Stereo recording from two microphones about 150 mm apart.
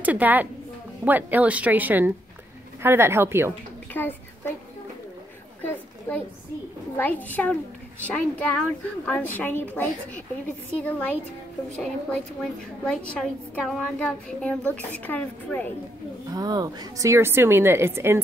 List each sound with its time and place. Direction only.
0.0 s a woman's voice: 10° right (ahead or behind)
3.9 s a woman's voice: 15° left (ahead or behind)
5.6 s a sound: 10° left (ahead or behind)
7.0 s a woman's voice: 10° left (ahead or behind)
16.3 s a woman's voice: 25° right (ahead or behind)